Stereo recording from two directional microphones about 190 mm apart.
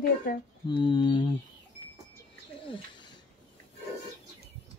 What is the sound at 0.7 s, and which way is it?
Mantra, 25° left (ahead or behind).